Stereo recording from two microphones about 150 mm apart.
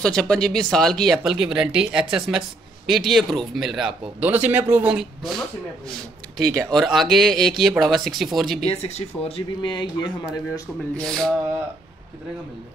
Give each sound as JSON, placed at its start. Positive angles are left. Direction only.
{"t": 0.0, "sound": "speech", "side_deg": 5}
{"t": 6.3, "sound": "speech", "side_deg": -25}
{"t": 6.6, "sound": "speech", "side_deg": 0}
{"t": 8.6, "sound": "speech", "side_deg": 45}
{"t": 11.0, "sound": "speech", "side_deg": 0}